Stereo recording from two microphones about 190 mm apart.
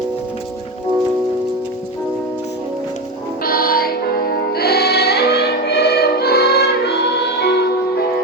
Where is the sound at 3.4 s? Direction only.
50° left (ahead or behind).